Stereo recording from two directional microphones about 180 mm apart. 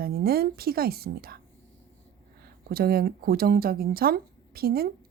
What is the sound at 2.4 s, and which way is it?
A woman's voice, 60° right (ahead or behind).